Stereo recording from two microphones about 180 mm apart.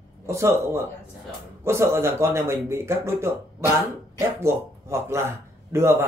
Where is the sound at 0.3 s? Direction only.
15° right (ahead or behind).